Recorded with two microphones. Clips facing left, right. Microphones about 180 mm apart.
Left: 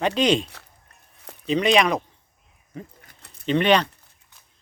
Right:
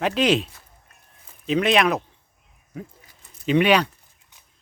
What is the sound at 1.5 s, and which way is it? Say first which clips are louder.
Speech: even; 5° right (ahead or behind).